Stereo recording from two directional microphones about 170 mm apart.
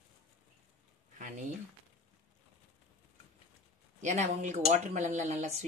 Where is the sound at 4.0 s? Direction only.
45° right (ahead or behind).